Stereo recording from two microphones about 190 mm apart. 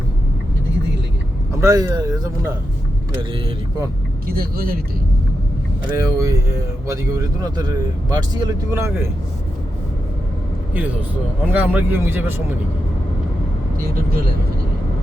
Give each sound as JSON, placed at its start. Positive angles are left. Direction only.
{"t": 1.6, "sound": "speech", "side_deg": -20}
{"t": 4.3, "sound": "speech", "side_deg": -50}
{"t": 5.9, "sound": "a man's voice", "side_deg": -15}
{"t": 10.8, "sound": "a man's voice", "side_deg": -10}